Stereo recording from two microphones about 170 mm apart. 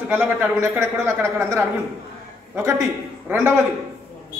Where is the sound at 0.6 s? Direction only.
15° right (ahead or behind).